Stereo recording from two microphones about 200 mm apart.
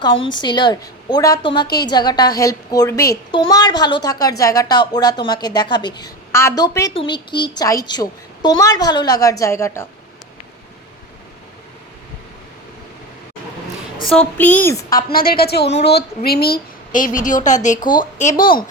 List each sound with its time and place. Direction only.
0.3 s a woman's voice: 20° left (ahead or behind)
14.1 s a woman's voice: 5° left (ahead or behind)
15.1 s a woman's voice: 50° left (ahead or behind)